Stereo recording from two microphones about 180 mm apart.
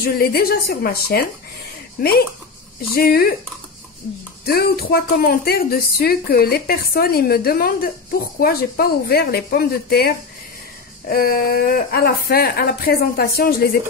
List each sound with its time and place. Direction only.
0.0 s speech: 60° left (ahead or behind)
2.9 s speech: 55° left (ahead or behind)
4.5 s speech: 60° left (ahead or behind)